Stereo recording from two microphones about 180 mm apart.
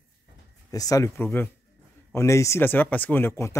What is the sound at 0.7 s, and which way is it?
Speech, 20° left (ahead or behind).